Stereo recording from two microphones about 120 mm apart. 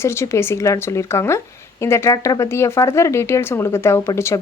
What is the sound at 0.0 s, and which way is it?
A woman's voice, 20° left (ahead or behind).